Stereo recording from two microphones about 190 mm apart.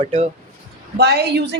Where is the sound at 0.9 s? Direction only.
60° right (ahead or behind).